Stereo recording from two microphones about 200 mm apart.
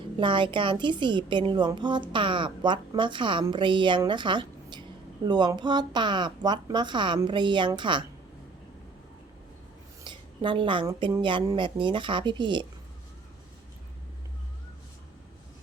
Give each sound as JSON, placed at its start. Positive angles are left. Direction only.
{"t": 0.2, "sound": "a woman's voice", "side_deg": -25}
{"t": 10.0, "sound": "a woman's voice", "side_deg": -25}